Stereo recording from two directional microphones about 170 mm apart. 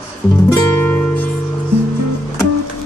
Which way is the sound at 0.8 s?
10° left (ahead or behind).